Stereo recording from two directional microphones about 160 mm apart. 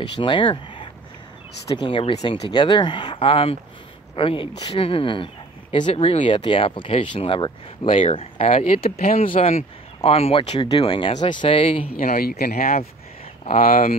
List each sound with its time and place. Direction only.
0.1 s speech: 30° left (ahead or behind)
11.9 s speech: 65° left (ahead or behind)
13.5 s speech: 45° left (ahead or behind)